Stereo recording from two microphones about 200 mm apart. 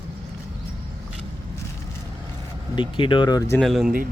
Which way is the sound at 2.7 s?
25° left (ahead or behind).